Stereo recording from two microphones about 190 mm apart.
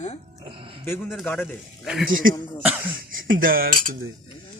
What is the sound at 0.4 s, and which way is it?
Speech, 25° right (ahead or behind).